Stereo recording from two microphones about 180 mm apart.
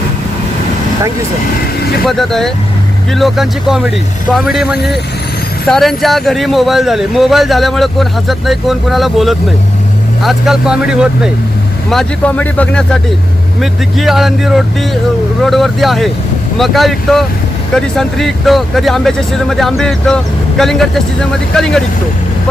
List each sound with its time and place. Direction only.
2.0 s speech: centre (ahead or behind)